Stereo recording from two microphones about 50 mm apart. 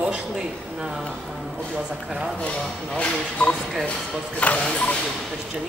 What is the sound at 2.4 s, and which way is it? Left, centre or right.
Speech, left.